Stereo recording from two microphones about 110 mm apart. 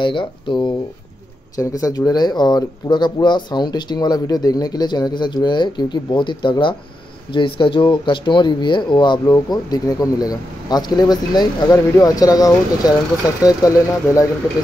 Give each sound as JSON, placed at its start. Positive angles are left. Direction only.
{"t": 0.0, "sound": "speech", "side_deg": 45}
{"t": 1.6, "sound": "speech", "side_deg": 30}